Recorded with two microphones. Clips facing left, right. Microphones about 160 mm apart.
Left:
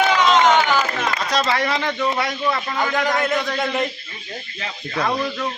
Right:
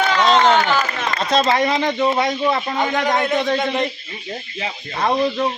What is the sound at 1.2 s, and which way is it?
Speech, 25° right (ahead or behind).